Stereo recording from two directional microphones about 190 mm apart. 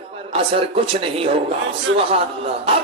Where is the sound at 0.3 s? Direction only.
30° right (ahead or behind).